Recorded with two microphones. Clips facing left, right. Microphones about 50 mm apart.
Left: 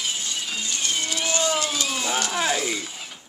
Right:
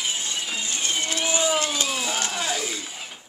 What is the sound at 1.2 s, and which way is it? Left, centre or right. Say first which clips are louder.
A man's voice: right 1 dB; centre.